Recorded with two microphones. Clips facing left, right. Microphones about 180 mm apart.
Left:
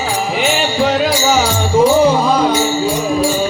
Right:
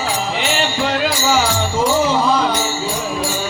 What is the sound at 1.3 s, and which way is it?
Music, 15° left (ahead or behind).